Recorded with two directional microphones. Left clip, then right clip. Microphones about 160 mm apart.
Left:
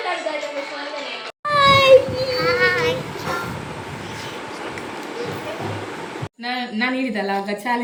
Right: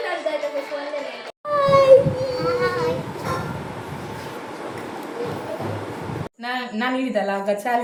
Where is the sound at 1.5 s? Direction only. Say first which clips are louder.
Left 1 dB; 20° right (ahead or behind).